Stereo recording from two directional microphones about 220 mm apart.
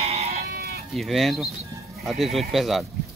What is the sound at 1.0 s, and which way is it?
Speech, centre (ahead or behind).